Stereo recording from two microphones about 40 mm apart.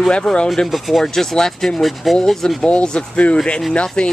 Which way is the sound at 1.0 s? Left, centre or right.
Centre.